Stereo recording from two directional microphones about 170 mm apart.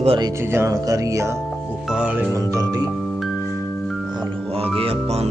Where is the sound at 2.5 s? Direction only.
20° right (ahead or behind).